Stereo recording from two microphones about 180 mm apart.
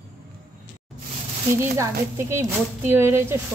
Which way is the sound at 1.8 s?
15° right (ahead or behind).